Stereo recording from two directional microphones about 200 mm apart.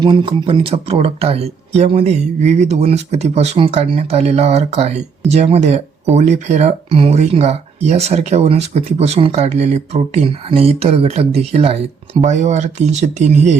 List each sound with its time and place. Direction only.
0.0 s speech: 25° right (ahead or behind)